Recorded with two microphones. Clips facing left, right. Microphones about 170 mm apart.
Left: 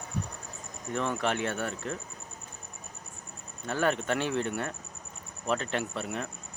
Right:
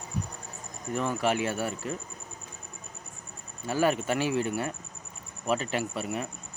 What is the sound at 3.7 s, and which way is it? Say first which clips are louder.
Speech: right 2 dB; 5° right (ahead or behind).